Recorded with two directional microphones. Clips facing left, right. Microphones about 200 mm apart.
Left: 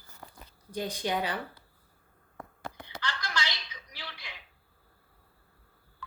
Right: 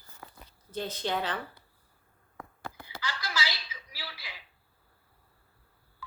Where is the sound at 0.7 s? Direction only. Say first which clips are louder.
Left 1 dB; 15° left (ahead or behind).